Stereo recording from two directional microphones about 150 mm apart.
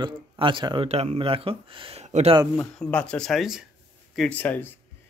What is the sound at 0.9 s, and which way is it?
Speech, 45° right (ahead or behind).